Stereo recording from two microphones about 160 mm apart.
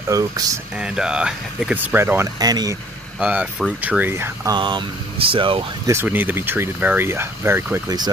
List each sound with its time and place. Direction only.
0.1 s speech: 20° right (ahead or behind)
0.7 s speech: 5° right (ahead or behind); by 2.8 s 25° right (ahead or behind)
3.2 s speech: 5° right (ahead or behind)
4.6 s speech: 30° right (ahead or behind)
5.9 s speech: 15° right (ahead or behind)